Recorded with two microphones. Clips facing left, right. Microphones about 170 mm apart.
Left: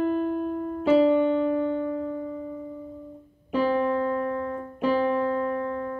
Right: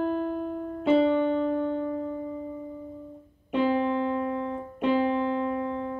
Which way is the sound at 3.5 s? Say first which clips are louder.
Left 1 dB; 25° right (ahead or behind).